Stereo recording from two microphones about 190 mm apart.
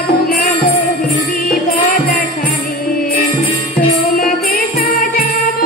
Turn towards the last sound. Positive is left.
turn(degrees=50)  # may be behind; listen again after turning